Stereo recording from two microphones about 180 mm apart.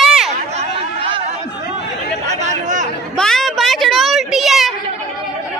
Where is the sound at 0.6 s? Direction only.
30° right (ahead or behind).